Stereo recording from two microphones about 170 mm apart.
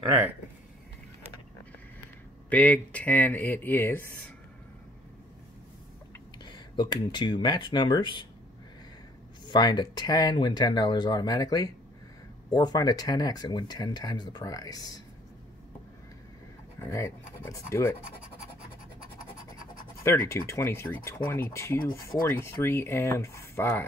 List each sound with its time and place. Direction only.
2.5 s speech: 10° left (ahead or behind)
6.4 s speech: 25° left (ahead or behind)
9.5 s speech: 25° left (ahead or behind)
16.8 s speech: 15° left (ahead or behind)
19.6 s scratch: 55° left (ahead or behind)
20.0 s speech: 15° left (ahead or behind)